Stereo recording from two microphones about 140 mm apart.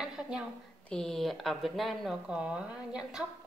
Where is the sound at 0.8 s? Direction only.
5° left (ahead or behind).